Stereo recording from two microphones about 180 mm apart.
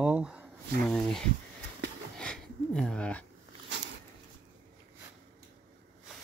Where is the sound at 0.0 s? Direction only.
5° right (ahead or behind).